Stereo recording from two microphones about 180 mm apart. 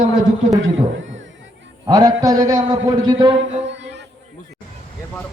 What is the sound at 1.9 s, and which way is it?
A man's voice, 20° right (ahead or behind).